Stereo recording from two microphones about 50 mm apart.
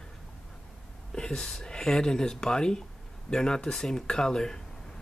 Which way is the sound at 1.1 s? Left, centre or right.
Centre.